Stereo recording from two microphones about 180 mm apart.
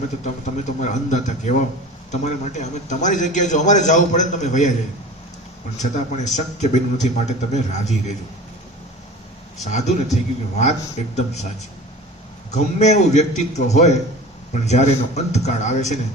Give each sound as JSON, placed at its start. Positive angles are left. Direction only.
{"t": 0.4, "sound": "a man's voice", "side_deg": 40}
{"t": 5.8, "sound": "a man's voice", "side_deg": 40}
{"t": 9.6, "sound": "a man's voice", "side_deg": 40}
{"t": 12.5, "sound": "a man's voice", "side_deg": 40}